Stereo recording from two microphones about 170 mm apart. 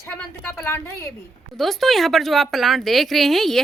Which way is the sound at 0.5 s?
15° left (ahead or behind).